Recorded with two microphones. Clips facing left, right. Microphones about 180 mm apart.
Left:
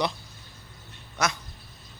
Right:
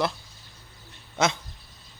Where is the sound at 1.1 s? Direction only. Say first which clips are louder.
Right 4 dB; 25° right (ahead or behind).